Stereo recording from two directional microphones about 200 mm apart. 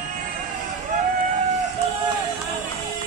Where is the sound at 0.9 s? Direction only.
40° right (ahead or behind).